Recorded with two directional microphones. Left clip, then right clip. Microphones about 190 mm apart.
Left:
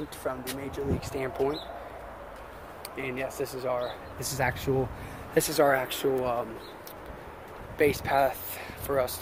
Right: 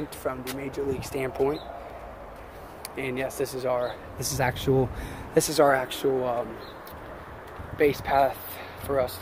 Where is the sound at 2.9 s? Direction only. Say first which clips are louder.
Right 3 dB; 20° right (ahead or behind); by 6.5 s 10° left (ahead or behind).